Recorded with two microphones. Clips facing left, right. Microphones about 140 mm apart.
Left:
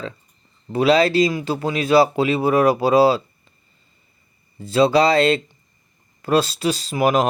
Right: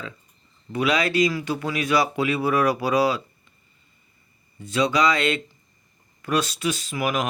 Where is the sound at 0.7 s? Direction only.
30° left (ahead or behind).